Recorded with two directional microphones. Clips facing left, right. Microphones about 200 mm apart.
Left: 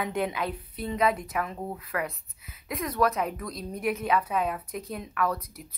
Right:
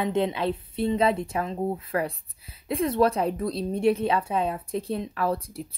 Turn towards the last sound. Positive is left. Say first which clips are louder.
# right 2 dB
turn(degrees=-30)  # may be behind; listen again after turning